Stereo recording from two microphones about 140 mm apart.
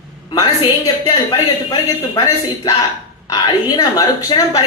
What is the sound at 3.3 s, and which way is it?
A man's voice, 25° left (ahead or behind).